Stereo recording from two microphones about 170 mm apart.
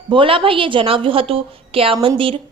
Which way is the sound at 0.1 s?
30° right (ahead or behind).